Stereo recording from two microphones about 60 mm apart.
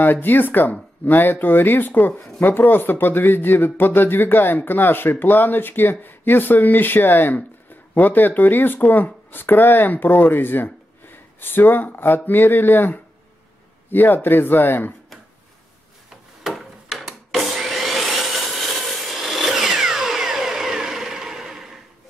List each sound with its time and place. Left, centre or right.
0.0 s speech: left
16.4 s vacuum cleaner: centre
19.0 s a sound: centre